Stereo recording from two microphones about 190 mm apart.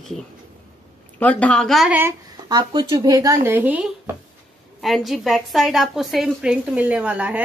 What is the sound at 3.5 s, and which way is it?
A woman's voice, 10° right (ahead or behind).